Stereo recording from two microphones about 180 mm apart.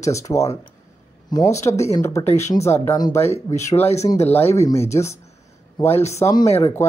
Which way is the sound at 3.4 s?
40° left (ahead or behind).